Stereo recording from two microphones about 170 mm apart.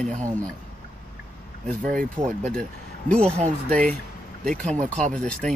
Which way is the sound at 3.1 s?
5° left (ahead or behind).